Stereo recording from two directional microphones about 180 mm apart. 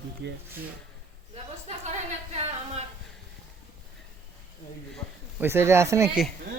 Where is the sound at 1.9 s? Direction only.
40° right (ahead or behind).